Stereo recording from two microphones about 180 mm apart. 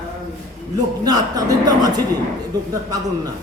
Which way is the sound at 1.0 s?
20° right (ahead or behind).